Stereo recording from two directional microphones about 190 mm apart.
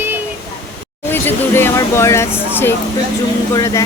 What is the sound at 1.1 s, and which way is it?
Speech, 10° left (ahead or behind).